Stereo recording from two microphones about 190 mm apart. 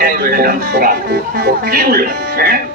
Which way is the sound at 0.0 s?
50° right (ahead or behind).